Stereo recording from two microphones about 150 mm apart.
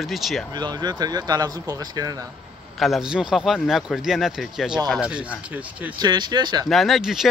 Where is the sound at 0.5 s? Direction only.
25° right (ahead or behind).